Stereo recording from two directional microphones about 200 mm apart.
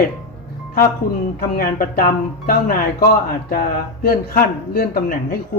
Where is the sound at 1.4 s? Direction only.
45° left (ahead or behind).